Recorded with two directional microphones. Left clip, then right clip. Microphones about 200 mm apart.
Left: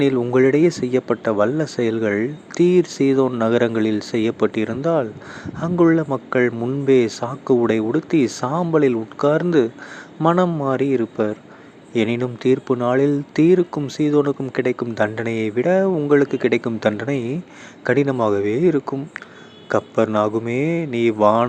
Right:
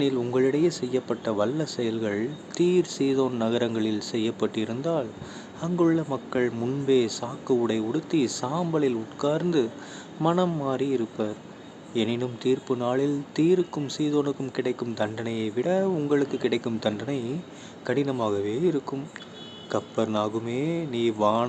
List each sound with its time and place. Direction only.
0.0 s speech: 25° left (ahead or behind)